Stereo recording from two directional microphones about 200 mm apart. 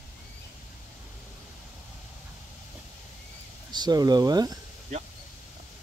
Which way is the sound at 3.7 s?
20° right (ahead or behind).